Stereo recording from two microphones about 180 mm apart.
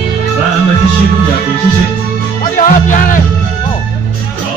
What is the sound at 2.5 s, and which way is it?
Music, 45° left (ahead or behind).